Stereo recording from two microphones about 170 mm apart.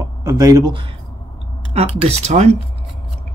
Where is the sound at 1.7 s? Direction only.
40° right (ahead or behind).